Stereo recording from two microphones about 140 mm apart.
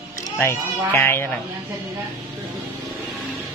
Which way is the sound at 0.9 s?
15° left (ahead or behind).